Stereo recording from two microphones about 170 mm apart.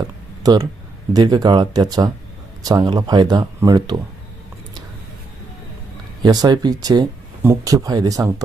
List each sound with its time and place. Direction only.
0.4 s speech: 25° right (ahead or behind)
6.2 s speech: 25° right (ahead or behind)